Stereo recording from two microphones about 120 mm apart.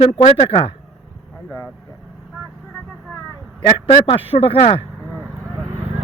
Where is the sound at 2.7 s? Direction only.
5° left (ahead or behind).